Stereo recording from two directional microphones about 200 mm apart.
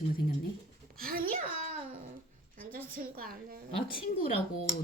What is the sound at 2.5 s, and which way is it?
A woman's voice, 45° right (ahead or behind).